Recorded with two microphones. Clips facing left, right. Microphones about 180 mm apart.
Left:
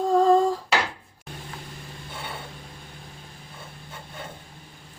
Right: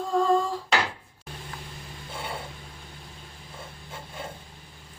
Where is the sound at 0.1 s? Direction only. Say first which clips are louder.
Left 4 dB; 40° left (ahead or behind).